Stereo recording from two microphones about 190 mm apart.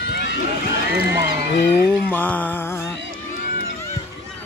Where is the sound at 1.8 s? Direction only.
10° left (ahead or behind).